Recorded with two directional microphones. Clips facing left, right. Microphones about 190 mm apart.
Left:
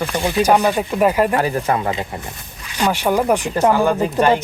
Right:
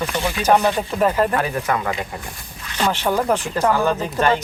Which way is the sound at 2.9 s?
15° left (ahead or behind).